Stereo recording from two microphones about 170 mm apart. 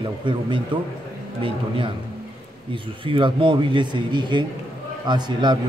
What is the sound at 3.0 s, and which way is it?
A man's voice, 30° right (ahead or behind).